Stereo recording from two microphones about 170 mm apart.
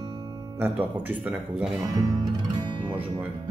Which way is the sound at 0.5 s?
10° right (ahead or behind).